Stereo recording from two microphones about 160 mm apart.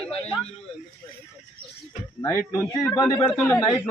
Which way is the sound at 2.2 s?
15° left (ahead or behind).